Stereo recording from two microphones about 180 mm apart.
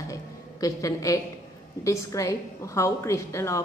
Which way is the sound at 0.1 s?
20° left (ahead or behind).